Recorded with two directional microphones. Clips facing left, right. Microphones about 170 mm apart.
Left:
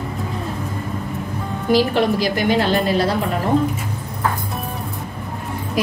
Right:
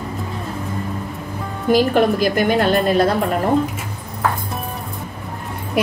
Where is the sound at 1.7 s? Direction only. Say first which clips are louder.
Right 2 dB; 50° right (ahead or behind).